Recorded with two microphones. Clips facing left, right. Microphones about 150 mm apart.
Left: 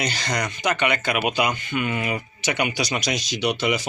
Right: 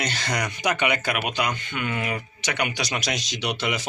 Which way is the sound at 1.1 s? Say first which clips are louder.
Left 4 dB; 10° left (ahead or behind).